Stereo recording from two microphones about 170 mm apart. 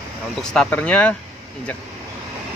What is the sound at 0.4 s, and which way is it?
Speech, 5° left (ahead or behind).